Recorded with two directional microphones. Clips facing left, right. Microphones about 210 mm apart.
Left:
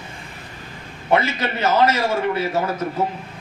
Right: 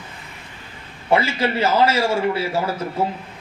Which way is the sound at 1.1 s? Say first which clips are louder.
Right 1 dB; 30° right (ahead or behind).